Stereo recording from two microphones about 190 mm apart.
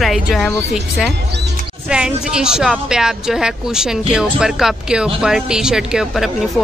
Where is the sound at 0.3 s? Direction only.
Centre (ahead or behind).